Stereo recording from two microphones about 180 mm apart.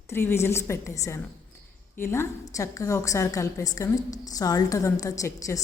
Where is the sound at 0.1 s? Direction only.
15° left (ahead or behind).